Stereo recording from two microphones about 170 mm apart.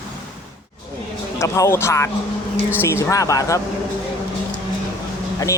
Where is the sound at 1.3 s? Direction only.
15° left (ahead or behind).